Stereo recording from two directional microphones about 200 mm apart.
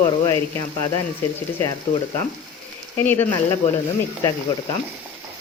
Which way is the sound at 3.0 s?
10° left (ahead or behind).